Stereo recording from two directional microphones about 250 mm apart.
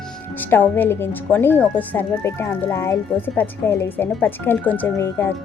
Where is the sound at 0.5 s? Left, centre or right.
Centre.